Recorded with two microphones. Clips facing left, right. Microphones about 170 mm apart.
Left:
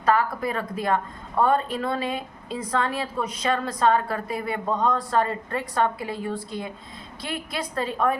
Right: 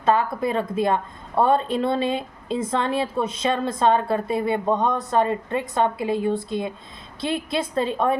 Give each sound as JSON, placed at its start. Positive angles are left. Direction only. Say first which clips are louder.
{"t": 0.0, "sound": "a woman's voice", "louder": "right 2 dB", "side_deg": -25}